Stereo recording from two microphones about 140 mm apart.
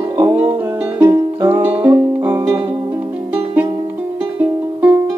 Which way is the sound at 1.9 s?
20° right (ahead or behind).